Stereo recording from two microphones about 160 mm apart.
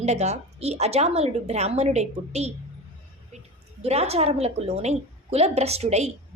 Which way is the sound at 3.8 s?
40° right (ahead or behind).